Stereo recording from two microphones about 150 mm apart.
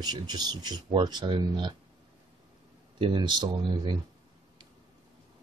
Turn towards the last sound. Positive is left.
turn(degrees=-30)  # may be behind; listen again after turning